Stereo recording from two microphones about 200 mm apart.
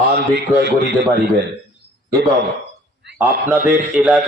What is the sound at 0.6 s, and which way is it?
Speech, 55° right (ahead or behind).